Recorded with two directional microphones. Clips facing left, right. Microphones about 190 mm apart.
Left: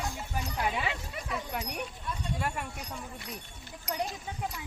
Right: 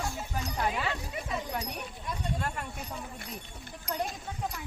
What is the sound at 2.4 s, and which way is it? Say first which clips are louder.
Speech: left 1 dB; 10° left (ahead or behind).